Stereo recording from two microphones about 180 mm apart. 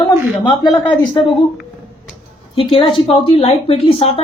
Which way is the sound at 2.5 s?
30° left (ahead or behind).